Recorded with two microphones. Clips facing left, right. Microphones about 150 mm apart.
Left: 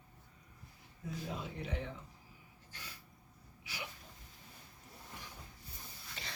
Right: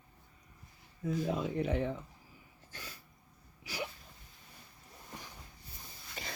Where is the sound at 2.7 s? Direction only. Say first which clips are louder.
Right 4 dB; 45° right (ahead or behind).